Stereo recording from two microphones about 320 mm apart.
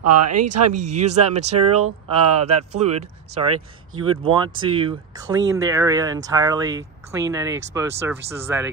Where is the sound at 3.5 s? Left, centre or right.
Right.